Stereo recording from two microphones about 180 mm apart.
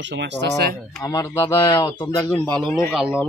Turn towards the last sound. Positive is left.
turn(degrees=-5)  # may be behind; listen again after turning